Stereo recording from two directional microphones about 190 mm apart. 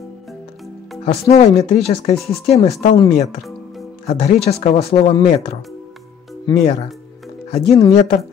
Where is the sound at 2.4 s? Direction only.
35° left (ahead or behind).